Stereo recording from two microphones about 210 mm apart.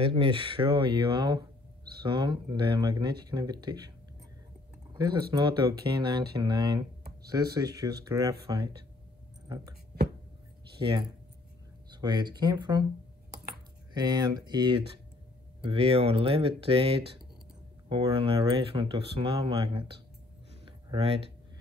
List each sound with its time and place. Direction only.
0.0 s speech: 25° right (ahead or behind)
4.9 s speech: 20° right (ahead or behind)
10.8 s speech: 20° right (ahead or behind)
13.9 s speech: 20° right (ahead or behind)
20.6 s a sound: 25° right (ahead or behind)